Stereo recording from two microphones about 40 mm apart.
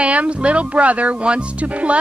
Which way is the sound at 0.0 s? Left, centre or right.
Right.